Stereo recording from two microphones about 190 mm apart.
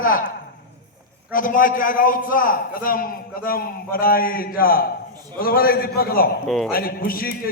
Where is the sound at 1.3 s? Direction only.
45° left (ahead or behind).